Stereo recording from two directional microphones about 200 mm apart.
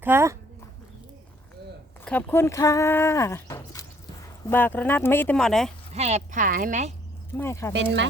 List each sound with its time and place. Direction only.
0.0 s speech: 10° right (ahead or behind)
2.0 s speech: 10° left (ahead or behind)
5.9 s a woman's voice: 35° right (ahead or behind)
7.3 s speech: 15° left (ahead or behind)